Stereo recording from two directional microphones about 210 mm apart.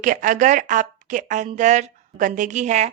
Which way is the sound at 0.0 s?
40° right (ahead or behind).